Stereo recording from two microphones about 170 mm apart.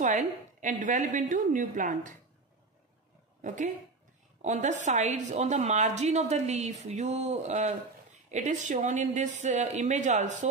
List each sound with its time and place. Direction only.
0.0 s a woman's voice: 45° right (ahead or behind)
3.4 s a woman's voice: 50° right (ahead or behind)